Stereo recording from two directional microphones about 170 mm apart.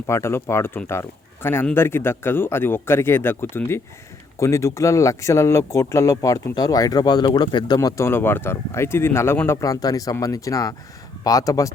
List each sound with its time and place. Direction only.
0.1 s speech: 15° left (ahead or behind)